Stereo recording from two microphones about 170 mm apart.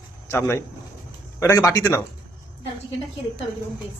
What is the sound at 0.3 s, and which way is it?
Speech, 15° left (ahead or behind).